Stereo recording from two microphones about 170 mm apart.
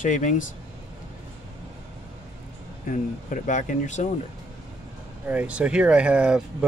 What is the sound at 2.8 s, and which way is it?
Speech, 50° left (ahead or behind).